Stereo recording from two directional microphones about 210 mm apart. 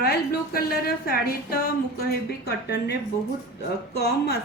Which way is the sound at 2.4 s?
50° left (ahead or behind).